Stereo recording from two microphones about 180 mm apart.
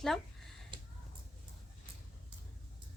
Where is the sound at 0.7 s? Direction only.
25° right (ahead or behind).